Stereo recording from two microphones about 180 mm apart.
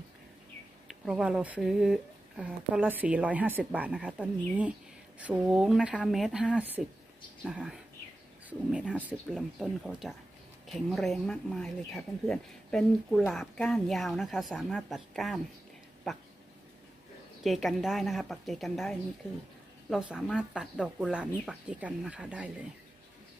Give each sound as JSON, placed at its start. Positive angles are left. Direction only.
{"t": 0.8, "sound": "speech", "side_deg": -5}
{"t": 17.4, "sound": "speech", "side_deg": 0}